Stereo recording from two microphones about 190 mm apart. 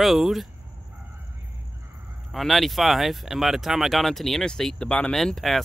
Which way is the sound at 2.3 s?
Centre (ahead or behind).